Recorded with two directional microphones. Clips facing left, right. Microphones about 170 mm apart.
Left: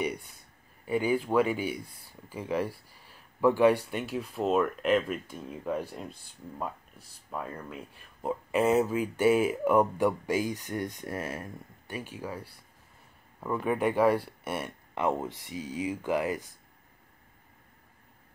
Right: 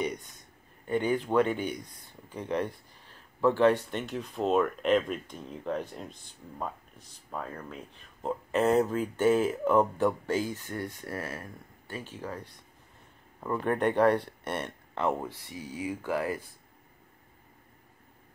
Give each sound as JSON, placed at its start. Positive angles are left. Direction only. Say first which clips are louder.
{"t": 0.0, "sound": "speech", "louder": "even", "side_deg": 10}